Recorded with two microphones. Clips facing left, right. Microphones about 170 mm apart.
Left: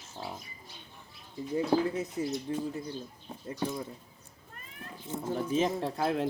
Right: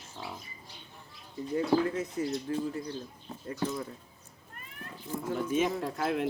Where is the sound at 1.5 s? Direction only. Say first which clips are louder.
Even; 15° left (ahead or behind).